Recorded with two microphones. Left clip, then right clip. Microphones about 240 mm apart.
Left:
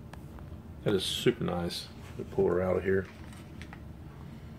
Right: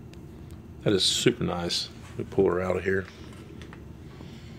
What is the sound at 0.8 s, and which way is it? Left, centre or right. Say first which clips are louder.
Speech: right 5 dB; right.